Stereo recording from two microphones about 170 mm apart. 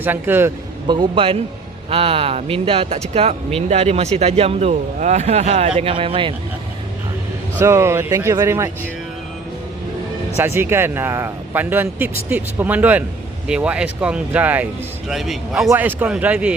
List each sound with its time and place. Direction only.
0.0 s speech: 10° right (ahead or behind)
0.9 s speech: 30° right (ahead or behind)
7.6 s speech: 15° right (ahead or behind)
10.3 s a man's voice: 15° right (ahead or behind)